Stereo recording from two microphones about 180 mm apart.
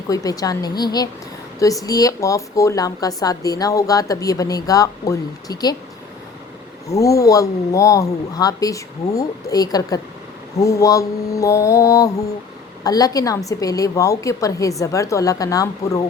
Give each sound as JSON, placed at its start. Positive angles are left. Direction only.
{"t": 0.1, "sound": "speech", "side_deg": 20}
{"t": 6.8, "sound": "speech", "side_deg": 20}